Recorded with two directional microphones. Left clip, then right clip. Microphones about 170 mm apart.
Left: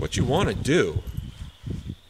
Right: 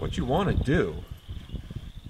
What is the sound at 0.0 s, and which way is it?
Speech, 20° left (ahead or behind).